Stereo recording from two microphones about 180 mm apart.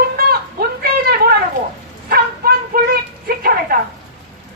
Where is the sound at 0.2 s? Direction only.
55° right (ahead or behind).